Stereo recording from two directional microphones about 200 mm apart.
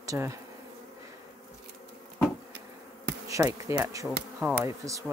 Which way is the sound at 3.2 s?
15° right (ahead or behind).